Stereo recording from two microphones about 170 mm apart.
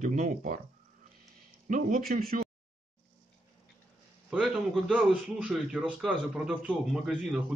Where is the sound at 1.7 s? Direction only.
55° right (ahead or behind).